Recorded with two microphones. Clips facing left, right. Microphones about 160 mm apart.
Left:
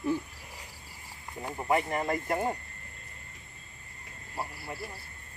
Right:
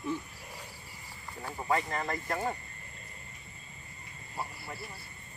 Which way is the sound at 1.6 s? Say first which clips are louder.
Left 3 dB; 15° left (ahead or behind).